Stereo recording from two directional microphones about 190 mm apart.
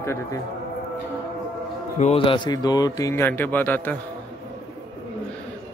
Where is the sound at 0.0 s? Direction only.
15° left (ahead or behind).